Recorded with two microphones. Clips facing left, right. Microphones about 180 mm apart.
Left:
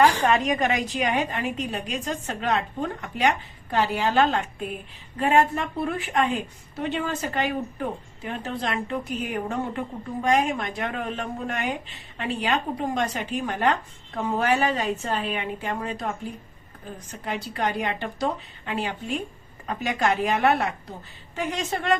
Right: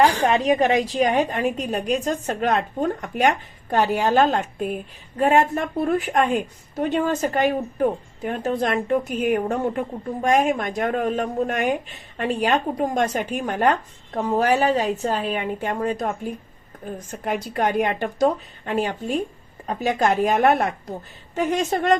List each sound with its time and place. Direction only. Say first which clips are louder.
0.0 s a woman's voice: right 2 dB; 30° right (ahead or behind)
17.1 s a woman's voice: right 5 dB; 50° right (ahead or behind)